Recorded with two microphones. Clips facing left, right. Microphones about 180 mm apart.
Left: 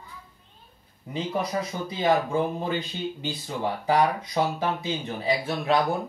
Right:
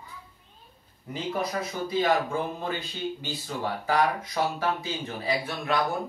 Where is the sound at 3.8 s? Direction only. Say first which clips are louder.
Left 3 dB; 20° left (ahead or behind).